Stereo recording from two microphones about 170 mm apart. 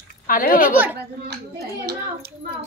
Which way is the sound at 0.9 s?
75° right (ahead or behind).